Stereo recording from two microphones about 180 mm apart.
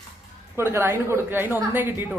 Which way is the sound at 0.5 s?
15° right (ahead or behind).